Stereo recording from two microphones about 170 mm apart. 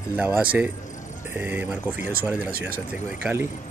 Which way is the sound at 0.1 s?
10° right (ahead or behind).